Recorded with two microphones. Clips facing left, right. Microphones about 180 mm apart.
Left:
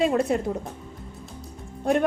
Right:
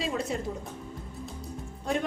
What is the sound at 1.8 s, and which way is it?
Speech, 60° left (ahead or behind).